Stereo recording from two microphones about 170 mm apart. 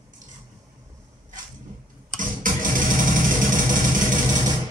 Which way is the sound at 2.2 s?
50° right (ahead or behind).